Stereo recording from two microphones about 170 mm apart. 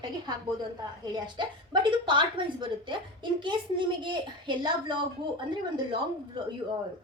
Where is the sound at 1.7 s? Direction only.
30° right (ahead or behind).